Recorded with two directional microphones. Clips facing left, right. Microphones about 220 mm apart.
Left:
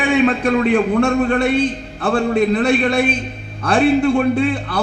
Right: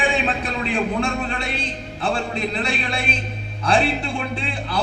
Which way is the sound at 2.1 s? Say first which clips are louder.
Left 10 dB; 50° left (ahead or behind).